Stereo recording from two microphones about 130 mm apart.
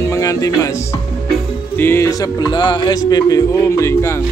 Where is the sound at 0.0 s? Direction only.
25° left (ahead or behind).